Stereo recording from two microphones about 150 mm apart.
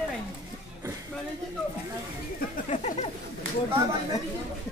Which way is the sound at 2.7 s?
45° left (ahead or behind).